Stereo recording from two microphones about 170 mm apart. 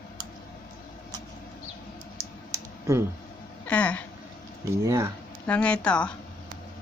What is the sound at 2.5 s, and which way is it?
Computer keyboard, 20° right (ahead or behind).